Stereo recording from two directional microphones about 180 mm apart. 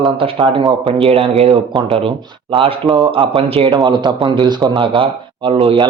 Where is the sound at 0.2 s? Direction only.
30° right (ahead or behind).